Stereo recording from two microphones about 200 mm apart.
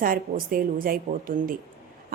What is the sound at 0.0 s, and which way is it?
Speech, 45° right (ahead or behind).